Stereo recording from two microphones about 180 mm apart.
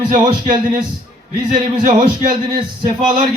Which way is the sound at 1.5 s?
40° right (ahead or behind).